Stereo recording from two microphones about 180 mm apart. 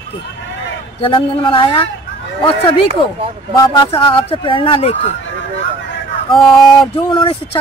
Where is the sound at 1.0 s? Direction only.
30° left (ahead or behind).